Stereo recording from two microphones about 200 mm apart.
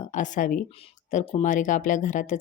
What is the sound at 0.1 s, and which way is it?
Speech, 40° left (ahead or behind).